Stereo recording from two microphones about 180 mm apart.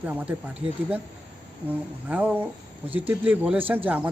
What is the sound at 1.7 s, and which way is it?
Speech, 10° right (ahead or behind).